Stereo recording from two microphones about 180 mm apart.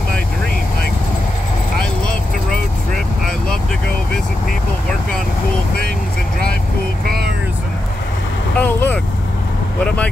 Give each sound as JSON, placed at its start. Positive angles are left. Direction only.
{"t": 7.1, "sound": "vehicle", "side_deg": -60}
{"t": 8.5, "sound": "vehicle", "side_deg": 5}